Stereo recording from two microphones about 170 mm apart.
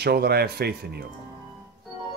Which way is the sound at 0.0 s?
70° right (ahead or behind).